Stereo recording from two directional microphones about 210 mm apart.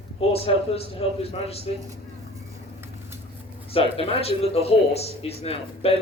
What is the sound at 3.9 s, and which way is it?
Speech, 25° left (ahead or behind).